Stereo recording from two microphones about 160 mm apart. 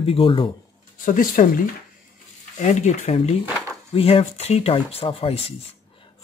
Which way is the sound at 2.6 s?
50° left (ahead or behind).